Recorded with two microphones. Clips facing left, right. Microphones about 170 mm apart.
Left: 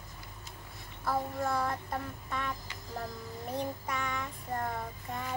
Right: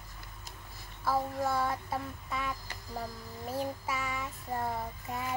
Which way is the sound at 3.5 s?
5° right (ahead or behind).